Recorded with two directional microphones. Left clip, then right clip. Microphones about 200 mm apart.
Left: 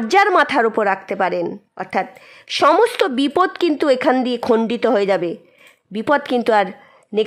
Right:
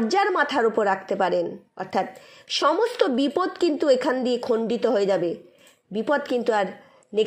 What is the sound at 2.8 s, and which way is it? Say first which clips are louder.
A woman's voice: left 6 dB; 25° left (ahead or behind).